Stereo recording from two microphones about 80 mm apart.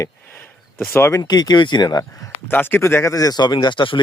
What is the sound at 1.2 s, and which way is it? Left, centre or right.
Speech, left.